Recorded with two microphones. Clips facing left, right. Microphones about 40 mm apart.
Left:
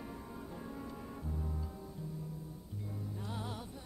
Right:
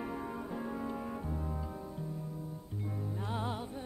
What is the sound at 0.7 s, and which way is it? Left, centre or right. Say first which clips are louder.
Music: right 7 dB; right.